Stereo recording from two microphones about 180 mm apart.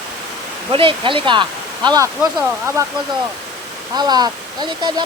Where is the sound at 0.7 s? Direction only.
30° right (ahead or behind).